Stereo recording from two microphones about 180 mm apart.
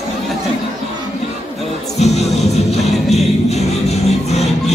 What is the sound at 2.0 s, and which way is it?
Music, 35° left (ahead or behind).